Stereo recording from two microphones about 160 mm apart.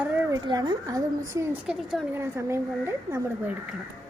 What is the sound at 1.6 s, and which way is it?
Speech, 5° right (ahead or behind).